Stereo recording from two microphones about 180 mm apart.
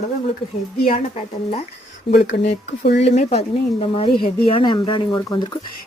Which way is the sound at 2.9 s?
35° left (ahead or behind).